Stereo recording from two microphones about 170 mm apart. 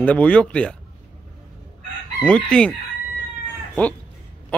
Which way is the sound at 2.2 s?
5° left (ahead or behind).